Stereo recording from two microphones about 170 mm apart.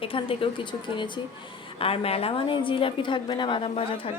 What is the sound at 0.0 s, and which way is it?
A woman's voice, 30° left (ahead or behind).